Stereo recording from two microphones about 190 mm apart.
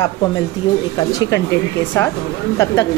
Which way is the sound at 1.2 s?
15° left (ahead or behind).